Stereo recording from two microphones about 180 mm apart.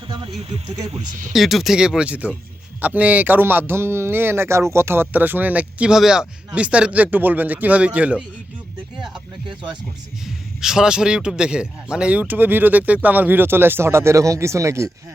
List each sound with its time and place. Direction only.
0.3 s speech: 35° right (ahead or behind)
1.3 s speech: centre (ahead or behind); by 14.8 s 15° right (ahead or behind)